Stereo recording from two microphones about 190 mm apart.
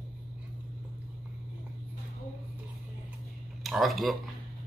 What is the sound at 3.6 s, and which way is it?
Speech, centre (ahead or behind).